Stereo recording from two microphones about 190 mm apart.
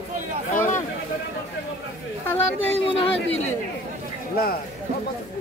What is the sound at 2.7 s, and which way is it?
Speech, 30° left (ahead or behind).